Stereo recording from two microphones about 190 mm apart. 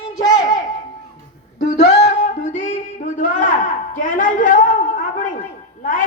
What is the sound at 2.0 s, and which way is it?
Music, 75° left (ahead or behind).